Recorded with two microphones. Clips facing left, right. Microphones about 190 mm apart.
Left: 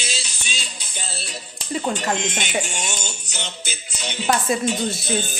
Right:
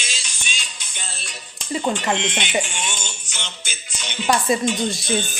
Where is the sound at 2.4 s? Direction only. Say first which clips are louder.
Right 1 dB; 40° left (ahead or behind).